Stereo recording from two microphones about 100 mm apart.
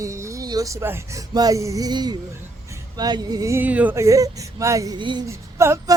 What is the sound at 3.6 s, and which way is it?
Speech, 15° right (ahead or behind).